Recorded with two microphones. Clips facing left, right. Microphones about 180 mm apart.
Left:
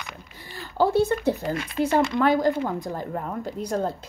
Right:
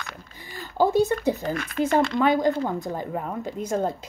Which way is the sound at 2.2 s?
5° left (ahead or behind).